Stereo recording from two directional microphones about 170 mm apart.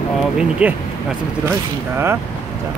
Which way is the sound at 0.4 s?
5° right (ahead or behind).